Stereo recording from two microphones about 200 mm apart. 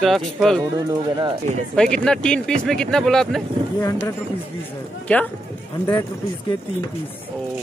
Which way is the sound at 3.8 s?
15° left (ahead or behind).